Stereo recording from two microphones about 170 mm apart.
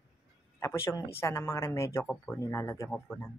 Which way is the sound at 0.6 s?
15° left (ahead or behind).